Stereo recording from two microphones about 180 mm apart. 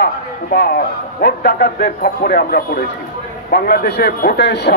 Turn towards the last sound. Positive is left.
turn(degrees=70)  # may be behind; listen again after turning